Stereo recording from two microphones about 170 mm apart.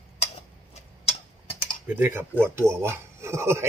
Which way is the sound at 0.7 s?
40° left (ahead or behind).